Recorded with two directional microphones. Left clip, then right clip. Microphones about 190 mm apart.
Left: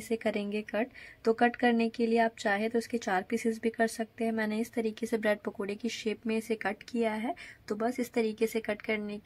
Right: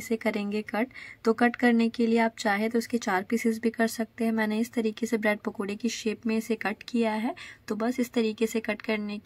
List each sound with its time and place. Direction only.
0.1 s speech: 25° right (ahead or behind)